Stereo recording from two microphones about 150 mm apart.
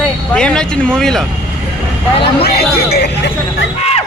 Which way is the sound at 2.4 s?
90° left.